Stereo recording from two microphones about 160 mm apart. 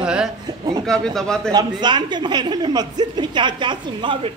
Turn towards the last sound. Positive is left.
turn(degrees=-30)  # may be behind; listen again after turning